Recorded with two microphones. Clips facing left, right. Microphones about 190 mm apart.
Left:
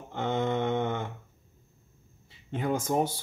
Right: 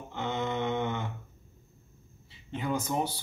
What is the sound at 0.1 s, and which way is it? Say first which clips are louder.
Mantra: left 4 dB; 50° left (ahead or behind).